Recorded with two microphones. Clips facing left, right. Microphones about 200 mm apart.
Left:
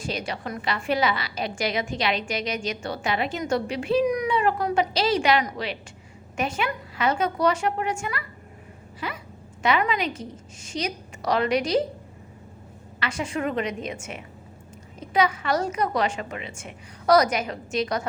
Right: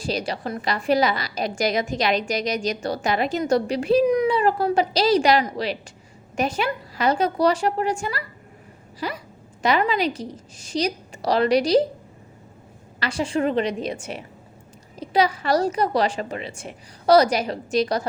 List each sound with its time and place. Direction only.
0.0 s a woman's voice: 35° right (ahead or behind)
13.0 s a woman's voice: 35° right (ahead or behind)